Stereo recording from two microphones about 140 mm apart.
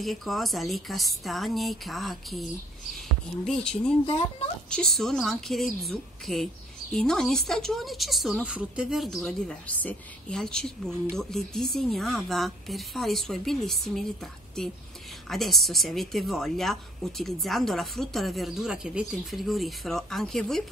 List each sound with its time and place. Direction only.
0.0 s a woman's voice: centre (ahead or behind)
3.4 s a woman's voice: 5° left (ahead or behind)
4.0 s a sound: 40° left (ahead or behind)
4.6 s a woman's voice: 5° left (ahead or behind)